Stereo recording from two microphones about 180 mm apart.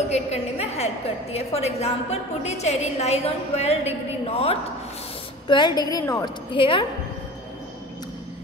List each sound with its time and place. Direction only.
0.1 s a woman's voice: 35° left (ahead or behind); by 6.3 s 20° left (ahead or behind)
6.5 s a woman's voice: 30° left (ahead or behind)